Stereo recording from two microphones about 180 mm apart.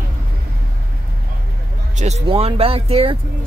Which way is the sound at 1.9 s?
40° right (ahead or behind).